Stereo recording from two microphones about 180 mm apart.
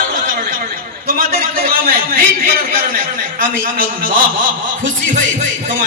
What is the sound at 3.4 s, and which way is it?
Speech, 50° right (ahead or behind).